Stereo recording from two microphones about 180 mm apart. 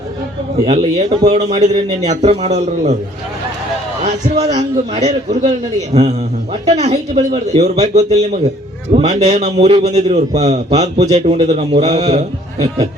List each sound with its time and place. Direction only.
0.6 s a man's voice: 35° right (ahead or behind)
4.0 s a man's voice: 40° right (ahead or behind)